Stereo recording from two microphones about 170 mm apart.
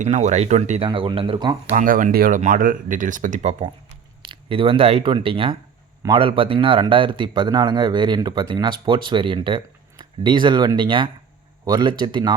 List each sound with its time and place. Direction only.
0.0 s speech: 45° right (ahead or behind)
0.9 s speech: 30° right (ahead or behind)
1.7 s speech: 50° right (ahead or behind)
4.3 s speech: 30° right (ahead or behind)